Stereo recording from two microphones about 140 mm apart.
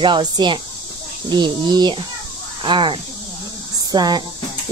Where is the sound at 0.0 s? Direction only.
35° right (ahead or behind).